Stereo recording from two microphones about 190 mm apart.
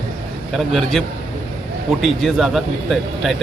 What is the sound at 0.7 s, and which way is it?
Speech, centre (ahead or behind).